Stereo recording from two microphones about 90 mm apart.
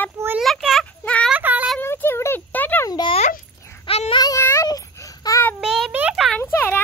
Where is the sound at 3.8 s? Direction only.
70° left (ahead or behind).